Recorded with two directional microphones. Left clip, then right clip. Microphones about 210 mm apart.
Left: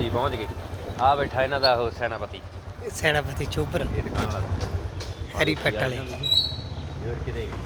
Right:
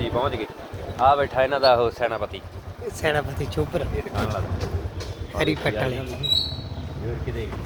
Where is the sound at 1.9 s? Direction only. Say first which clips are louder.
Right 4 dB; 50° right (ahead or behind).